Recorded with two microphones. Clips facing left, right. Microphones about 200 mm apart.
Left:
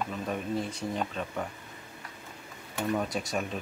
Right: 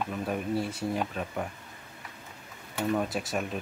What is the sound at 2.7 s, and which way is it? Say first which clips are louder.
Speech: right 1 dB; 5° right (ahead or behind).